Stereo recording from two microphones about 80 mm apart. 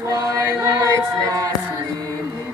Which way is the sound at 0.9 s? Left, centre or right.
Right.